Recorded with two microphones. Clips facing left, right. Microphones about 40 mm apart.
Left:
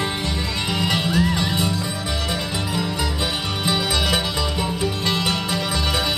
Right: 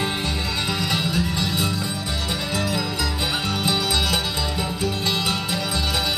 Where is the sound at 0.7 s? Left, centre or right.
Left.